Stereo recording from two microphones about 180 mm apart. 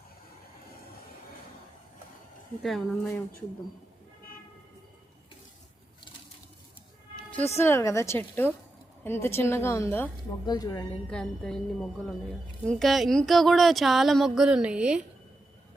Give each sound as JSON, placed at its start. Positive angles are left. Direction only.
{"t": 2.6, "sound": "a woman's voice", "side_deg": 0}
{"t": 7.3, "sound": "a woman's voice", "side_deg": 10}
{"t": 11.1, "sound": "a woman's voice", "side_deg": 5}